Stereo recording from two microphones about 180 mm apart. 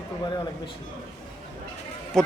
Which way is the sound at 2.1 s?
Centre (ahead or behind).